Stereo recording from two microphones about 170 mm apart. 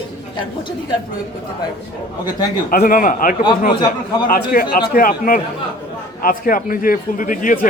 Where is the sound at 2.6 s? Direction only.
55° left (ahead or behind).